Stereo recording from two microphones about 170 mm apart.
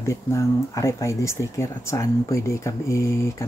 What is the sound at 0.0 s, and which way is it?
Speech, 15° left (ahead or behind).